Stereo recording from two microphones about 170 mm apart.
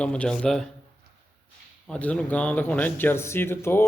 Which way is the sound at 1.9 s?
5° left (ahead or behind).